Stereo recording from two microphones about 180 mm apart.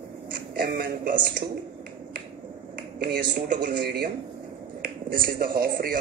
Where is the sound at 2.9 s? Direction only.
60° right (ahead or behind).